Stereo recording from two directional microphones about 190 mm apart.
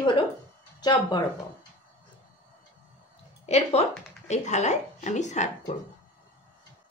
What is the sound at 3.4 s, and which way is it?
Speech, 35° left (ahead or behind).